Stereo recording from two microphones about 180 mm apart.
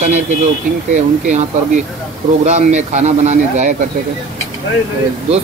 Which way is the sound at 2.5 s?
40° right (ahead or behind).